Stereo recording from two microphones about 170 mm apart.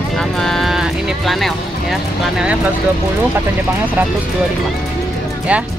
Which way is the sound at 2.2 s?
5° right (ahead or behind).